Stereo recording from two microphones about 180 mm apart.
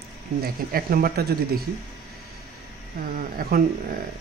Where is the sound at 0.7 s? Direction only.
55° right (ahead or behind).